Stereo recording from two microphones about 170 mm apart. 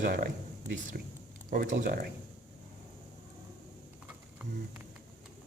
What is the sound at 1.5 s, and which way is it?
Speech, 55° right (ahead or behind).